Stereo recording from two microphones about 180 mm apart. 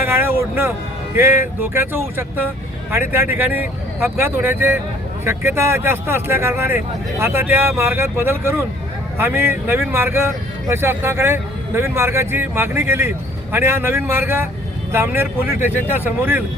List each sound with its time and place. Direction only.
0.0 s a man's voice: 15° right (ahead or behind)